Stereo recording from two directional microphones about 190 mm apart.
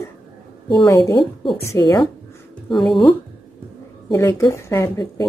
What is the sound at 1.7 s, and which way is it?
Speech, 20° left (ahead or behind).